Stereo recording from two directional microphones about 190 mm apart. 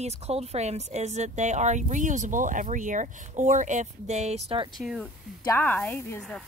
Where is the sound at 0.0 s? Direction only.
35° right (ahead or behind).